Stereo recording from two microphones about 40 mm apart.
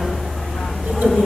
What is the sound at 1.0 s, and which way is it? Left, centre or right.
Insect, right.